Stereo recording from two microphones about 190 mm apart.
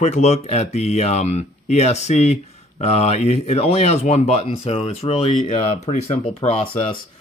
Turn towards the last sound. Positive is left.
turn(degrees=30)  # may be behind; listen again after turning